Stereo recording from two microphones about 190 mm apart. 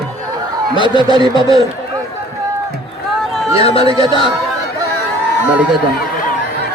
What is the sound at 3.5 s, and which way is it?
Speech, 30° left (ahead or behind).